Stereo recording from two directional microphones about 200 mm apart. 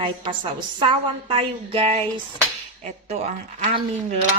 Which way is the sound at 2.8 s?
30° right (ahead or behind).